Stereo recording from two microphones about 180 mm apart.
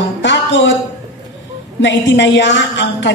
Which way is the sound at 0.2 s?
80° left.